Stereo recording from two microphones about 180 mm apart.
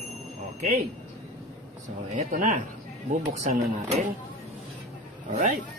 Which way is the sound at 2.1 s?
50° right (ahead or behind).